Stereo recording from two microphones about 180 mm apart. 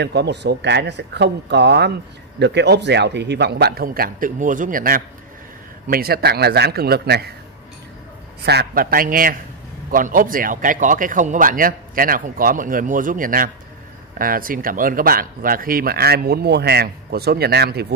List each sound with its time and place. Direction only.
0.0 s speech: 70° right (ahead or behind)
8.5 s speech: 60° right (ahead or behind)